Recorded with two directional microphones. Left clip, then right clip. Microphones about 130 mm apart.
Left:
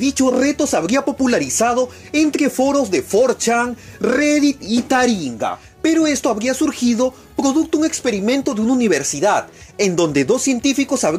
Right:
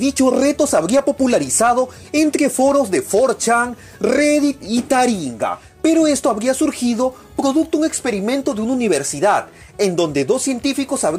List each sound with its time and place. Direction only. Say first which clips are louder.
0.0 s speech: right 1 dB; centre (ahead or behind)
5.8 s speech: right 2 dB; 5° right (ahead or behind)
6.5 s speech: even; 5° left (ahead or behind)
9.8 s speech: left 1 dB; 35° left (ahead or behind)
10.3 s speech: left 2 dB; 25° left (ahead or behind)